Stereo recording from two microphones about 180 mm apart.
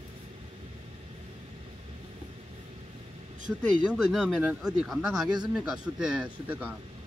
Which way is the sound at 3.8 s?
Centre (ahead or behind).